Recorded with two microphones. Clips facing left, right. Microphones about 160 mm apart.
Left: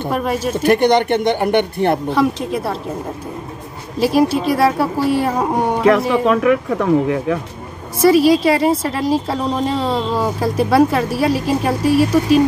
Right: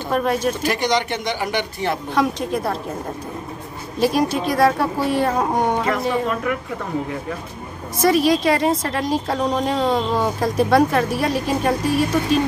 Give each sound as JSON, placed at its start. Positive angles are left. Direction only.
{"t": 0.1, "sound": "a woman's voice", "side_deg": 5}
{"t": 0.6, "sound": "speech", "side_deg": 55}
{"t": 2.1, "sound": "a woman's voice", "side_deg": 5}
{"t": 4.0, "sound": "speech", "side_deg": 5}
{"t": 5.9, "sound": "speech", "side_deg": 85}
{"t": 8.0, "sound": "a woman's voice", "side_deg": 5}